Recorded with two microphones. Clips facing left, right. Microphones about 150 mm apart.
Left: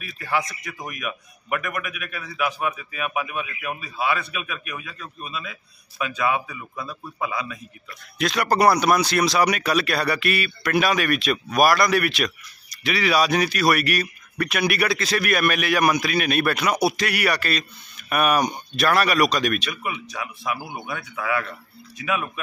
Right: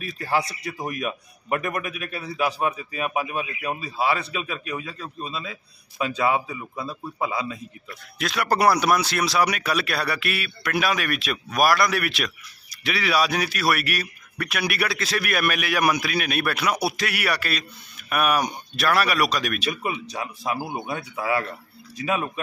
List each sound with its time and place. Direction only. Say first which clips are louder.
0.0 s a man's voice: right 1 dB; 35° right (ahead or behind)
8.2 s speech: left 2 dB; 5° right (ahead or behind)
19.7 s a man's voice: right 2 dB; 30° right (ahead or behind)